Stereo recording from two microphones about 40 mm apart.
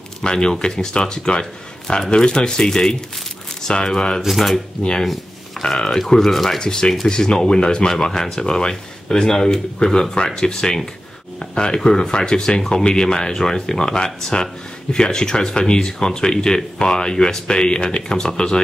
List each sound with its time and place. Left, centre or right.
0.2 s speech: centre
4.2 s speech: centre
4.8 s speech: left